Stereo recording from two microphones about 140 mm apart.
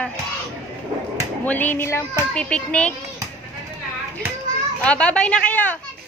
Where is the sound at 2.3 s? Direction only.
10° left (ahead or behind).